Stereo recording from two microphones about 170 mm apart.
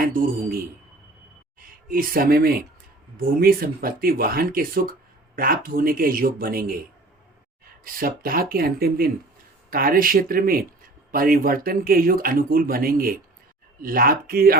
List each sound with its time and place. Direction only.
0.0 s speech: 55° right (ahead or behind)
7.9 s speech: 55° right (ahead or behind)